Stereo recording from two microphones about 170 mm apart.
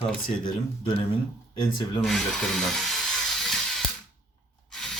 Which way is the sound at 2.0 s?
Centre (ahead or behind).